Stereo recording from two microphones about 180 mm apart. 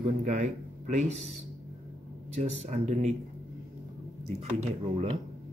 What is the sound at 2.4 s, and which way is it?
Speech, 35° right (ahead or behind).